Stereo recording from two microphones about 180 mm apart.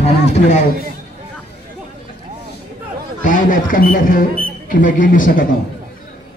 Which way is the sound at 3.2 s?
45° left (ahead or behind).